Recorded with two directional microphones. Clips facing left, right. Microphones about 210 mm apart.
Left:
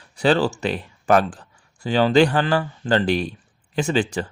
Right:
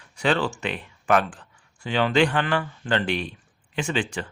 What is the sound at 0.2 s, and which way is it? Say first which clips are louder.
Speech: left 5 dB; 35° left (ahead or behind).